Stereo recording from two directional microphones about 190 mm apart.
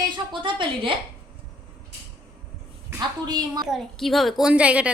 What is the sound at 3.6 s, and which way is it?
Speech, centre (ahead or behind).